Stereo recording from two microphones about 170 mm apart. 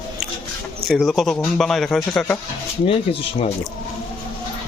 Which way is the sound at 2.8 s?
35° left (ahead or behind).